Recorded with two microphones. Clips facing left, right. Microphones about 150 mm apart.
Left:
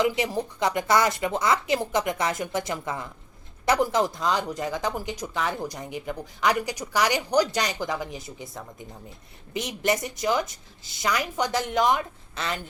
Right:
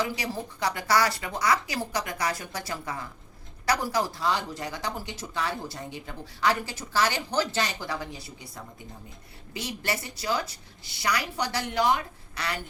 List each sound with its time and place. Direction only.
0.0 s speech: 20° left (ahead or behind)
9.5 s speech: 20° left (ahead or behind)